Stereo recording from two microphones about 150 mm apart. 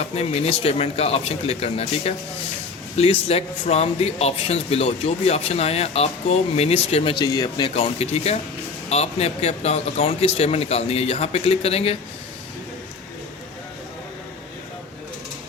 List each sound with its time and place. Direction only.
0.0 s speech: 45° left (ahead or behind)
7.2 s speech: 25° left (ahead or behind)
7.8 s speech: 45° left (ahead or behind)